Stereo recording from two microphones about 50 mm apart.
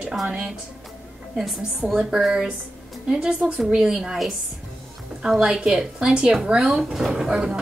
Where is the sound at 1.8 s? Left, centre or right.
Centre.